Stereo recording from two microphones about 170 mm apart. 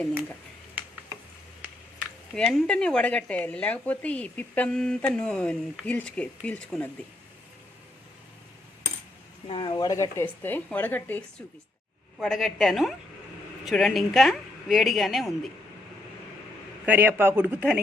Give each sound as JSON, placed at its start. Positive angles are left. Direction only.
{"t": 2.3, "sound": "speech", "side_deg": 0}
{"t": 9.5, "sound": "speech", "side_deg": 30}
{"t": 12.2, "sound": "a woman's voice", "side_deg": 0}
{"t": 16.8, "sound": "a man's voice", "side_deg": -10}